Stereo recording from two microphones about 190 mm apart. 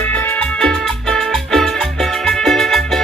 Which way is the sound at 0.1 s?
10° left (ahead or behind).